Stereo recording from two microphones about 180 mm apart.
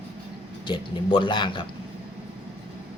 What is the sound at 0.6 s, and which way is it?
Speech, 25° left (ahead or behind).